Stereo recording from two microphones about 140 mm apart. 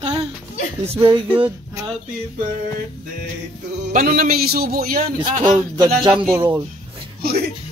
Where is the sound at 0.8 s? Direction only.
40° right (ahead or behind).